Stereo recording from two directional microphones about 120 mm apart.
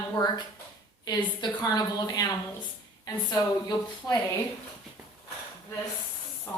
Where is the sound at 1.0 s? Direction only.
35° left (ahead or behind).